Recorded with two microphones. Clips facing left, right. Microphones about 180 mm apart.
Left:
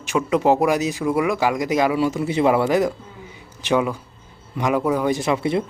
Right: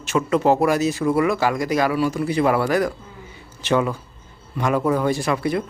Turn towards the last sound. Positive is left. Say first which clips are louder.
# left 1 dB
turn(degrees=25)  # may be behind; listen again after turning